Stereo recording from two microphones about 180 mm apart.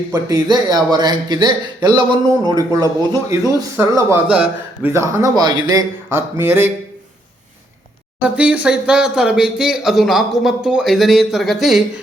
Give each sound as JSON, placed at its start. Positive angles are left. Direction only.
{"t": 0.1, "sound": "a man's voice", "side_deg": -20}
{"t": 8.2, "sound": "speech", "side_deg": -5}